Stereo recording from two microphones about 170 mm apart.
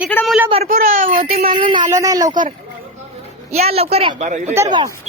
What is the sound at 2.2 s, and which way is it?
Speech, 50° right (ahead or behind).